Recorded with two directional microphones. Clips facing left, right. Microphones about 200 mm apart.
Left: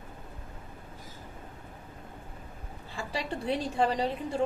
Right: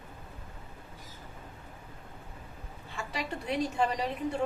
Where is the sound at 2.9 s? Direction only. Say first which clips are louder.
Left 2 dB; 30° left (ahead or behind).